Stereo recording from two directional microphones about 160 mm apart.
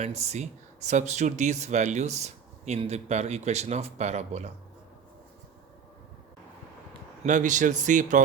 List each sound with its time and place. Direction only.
0.0 s speech: 45° right (ahead or behind)
7.3 s speech: 50° right (ahead or behind)